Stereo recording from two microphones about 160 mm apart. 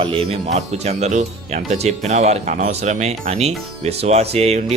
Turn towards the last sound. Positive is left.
turn(degrees=-40)  # may be behind; listen again after turning